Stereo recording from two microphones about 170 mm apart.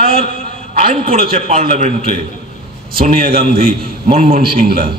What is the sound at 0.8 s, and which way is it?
A man's voice, 45° right (ahead or behind).